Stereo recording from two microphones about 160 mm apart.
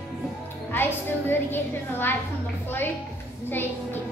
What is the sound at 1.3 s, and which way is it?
Speech, 15° left (ahead or behind).